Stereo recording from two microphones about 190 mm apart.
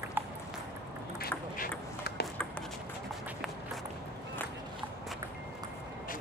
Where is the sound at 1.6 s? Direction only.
60° left (ahead or behind).